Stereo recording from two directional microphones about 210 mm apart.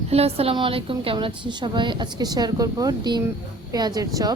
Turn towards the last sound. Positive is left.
turn(degrees=-15)  # may be behind; listen again after turning